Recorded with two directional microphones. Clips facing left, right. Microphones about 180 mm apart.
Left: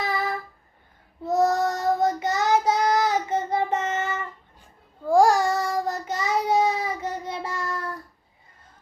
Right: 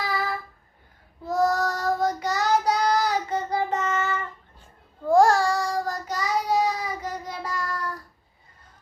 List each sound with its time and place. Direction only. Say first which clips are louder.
1.3 s child singing: left 2 dB; 25° left (ahead or behind)
5.0 s child singing: even; 10° left (ahead or behind)